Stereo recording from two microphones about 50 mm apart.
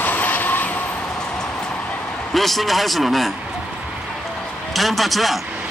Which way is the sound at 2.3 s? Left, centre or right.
Centre.